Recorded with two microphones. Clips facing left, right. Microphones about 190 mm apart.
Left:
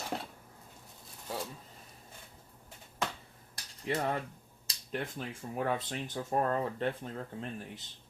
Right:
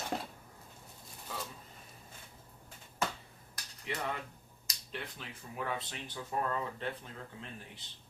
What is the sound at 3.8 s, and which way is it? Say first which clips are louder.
Speech: left 6 dB; 45° left (ahead or behind).